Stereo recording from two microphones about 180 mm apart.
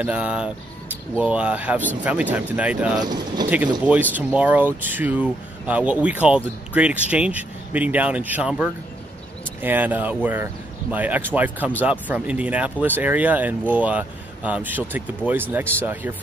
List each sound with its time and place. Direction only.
0.0 s speech: 5° right (ahead or behind)
3.1 s speech: 25° right (ahead or behind)
3.4 s speech: 10° right (ahead or behind)